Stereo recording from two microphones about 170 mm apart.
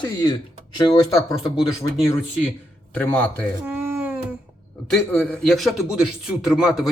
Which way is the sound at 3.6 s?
10° right (ahead or behind).